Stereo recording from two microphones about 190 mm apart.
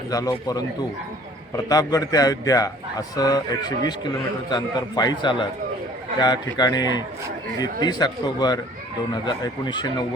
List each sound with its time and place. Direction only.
0.1 s speech: 20° left (ahead or behind)